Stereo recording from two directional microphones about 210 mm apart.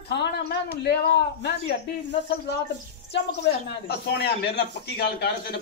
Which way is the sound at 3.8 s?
50° left (ahead or behind).